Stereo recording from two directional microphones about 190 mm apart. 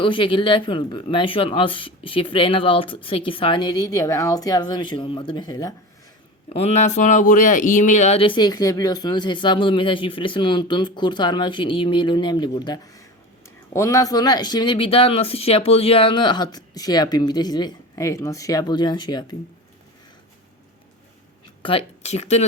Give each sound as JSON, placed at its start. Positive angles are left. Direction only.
{"t": 0.0, "sound": "speech", "side_deg": 25}
{"t": 6.5, "sound": "speech", "side_deg": 35}
{"t": 21.6, "sound": "speech", "side_deg": 30}